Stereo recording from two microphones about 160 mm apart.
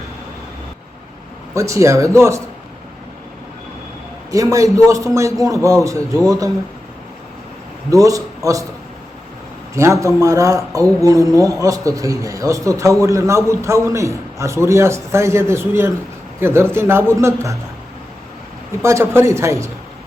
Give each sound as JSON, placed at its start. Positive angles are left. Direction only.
{"t": 1.5, "sound": "speech", "side_deg": -20}
{"t": 4.3, "sound": "speech", "side_deg": -20}
{"t": 7.9, "sound": "speech", "side_deg": -20}
{"t": 9.7, "sound": "a man's voice", "side_deg": -20}
{"t": 18.8, "sound": "a man's voice", "side_deg": -15}